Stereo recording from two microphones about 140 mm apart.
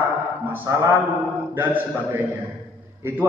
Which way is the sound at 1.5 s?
15° right (ahead or behind).